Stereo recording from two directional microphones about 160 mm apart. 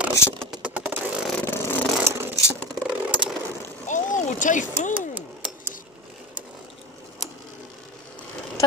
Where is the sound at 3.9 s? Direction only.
50° left (ahead or behind).